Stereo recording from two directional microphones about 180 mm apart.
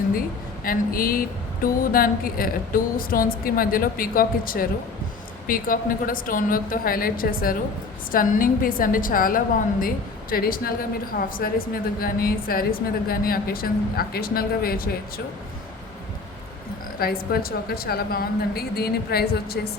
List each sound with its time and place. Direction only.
0.6 s a woman's voice: 55° left (ahead or behind)
17.0 s speech: 60° left (ahead or behind)